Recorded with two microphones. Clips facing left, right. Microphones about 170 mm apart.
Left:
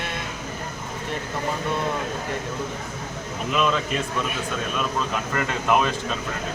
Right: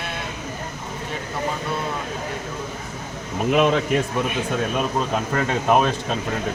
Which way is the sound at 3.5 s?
55° right (ahead or behind).